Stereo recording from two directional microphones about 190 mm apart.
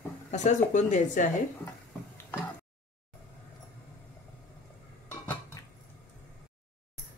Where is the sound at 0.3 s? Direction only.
40° left (ahead or behind).